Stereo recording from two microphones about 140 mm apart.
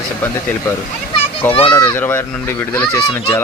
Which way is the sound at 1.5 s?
40° left (ahead or behind).